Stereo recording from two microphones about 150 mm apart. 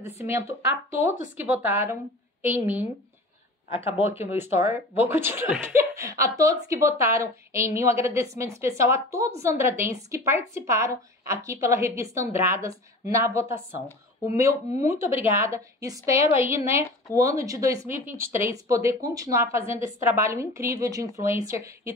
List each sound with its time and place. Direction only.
0.0 s speech: 20° right (ahead or behind)
4.2 s a woman's voice: 15° right (ahead or behind)